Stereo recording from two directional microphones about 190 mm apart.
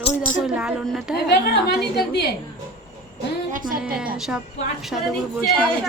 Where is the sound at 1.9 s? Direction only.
60° left (ahead or behind).